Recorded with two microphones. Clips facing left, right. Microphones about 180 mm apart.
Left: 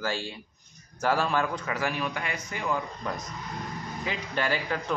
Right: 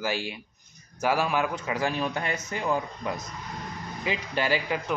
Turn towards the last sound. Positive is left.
turn(degrees=-15)  # may be behind; listen again after turning